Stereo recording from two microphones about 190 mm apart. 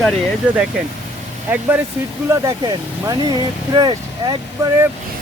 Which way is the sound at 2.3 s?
15° right (ahead or behind).